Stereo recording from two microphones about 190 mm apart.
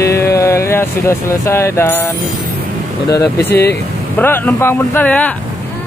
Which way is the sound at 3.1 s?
15° left (ahead or behind).